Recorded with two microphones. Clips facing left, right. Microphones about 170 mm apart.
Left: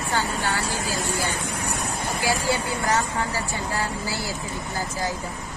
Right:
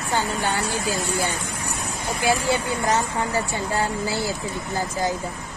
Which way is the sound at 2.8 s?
20° right (ahead or behind).